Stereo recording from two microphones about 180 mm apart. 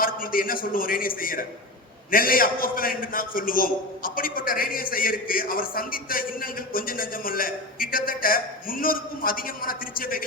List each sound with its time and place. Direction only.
0.0 s a man's voice: 50° left (ahead or behind)